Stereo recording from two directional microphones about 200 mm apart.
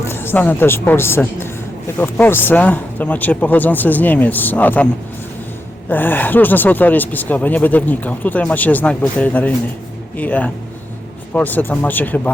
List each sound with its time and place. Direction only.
0.0 s a woman's voice: 10° left (ahead or behind)
5.9 s speech: 10° left (ahead or behind)